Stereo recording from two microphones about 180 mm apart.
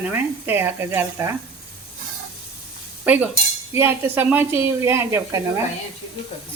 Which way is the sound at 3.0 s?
10° right (ahead or behind).